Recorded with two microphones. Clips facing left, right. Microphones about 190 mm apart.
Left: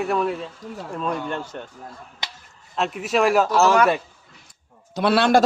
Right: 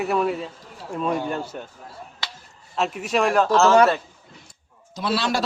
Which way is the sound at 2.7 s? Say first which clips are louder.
Left 1 dB; centre (ahead or behind).